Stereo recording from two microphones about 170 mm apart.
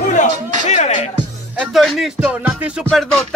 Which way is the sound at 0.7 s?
40° left (ahead or behind).